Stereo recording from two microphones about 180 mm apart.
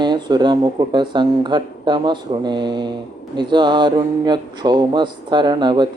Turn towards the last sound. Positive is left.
turn(degrees=-25)  # may be behind; listen again after turning